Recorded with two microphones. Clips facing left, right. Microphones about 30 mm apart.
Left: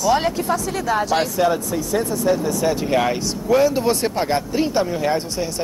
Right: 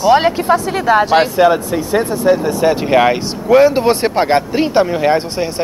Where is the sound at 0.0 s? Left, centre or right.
Right.